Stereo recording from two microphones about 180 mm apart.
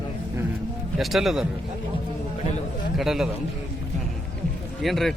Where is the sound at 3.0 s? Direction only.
Centre (ahead or behind).